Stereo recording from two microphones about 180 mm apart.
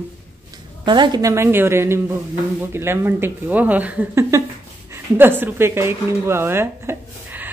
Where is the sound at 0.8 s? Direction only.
25° right (ahead or behind).